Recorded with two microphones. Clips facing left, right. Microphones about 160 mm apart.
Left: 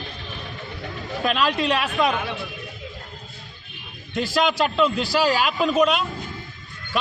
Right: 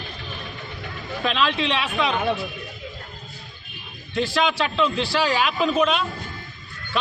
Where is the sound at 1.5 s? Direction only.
45° left (ahead or behind).